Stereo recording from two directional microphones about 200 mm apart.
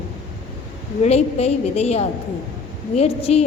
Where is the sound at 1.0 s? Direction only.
35° left (ahead or behind).